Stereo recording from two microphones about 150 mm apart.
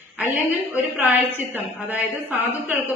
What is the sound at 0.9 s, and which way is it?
Speech, 10° right (ahead or behind).